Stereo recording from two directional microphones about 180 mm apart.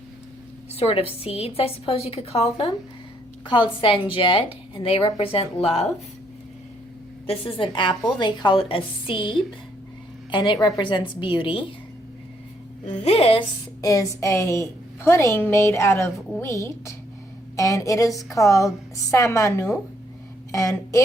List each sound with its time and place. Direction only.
0.8 s a woman's voice: 30° left (ahead or behind)
7.3 s a woman's voice: 30° left (ahead or behind)
12.8 s speech: 40° left (ahead or behind)
13.8 s a woman's voice: 15° left (ahead or behind)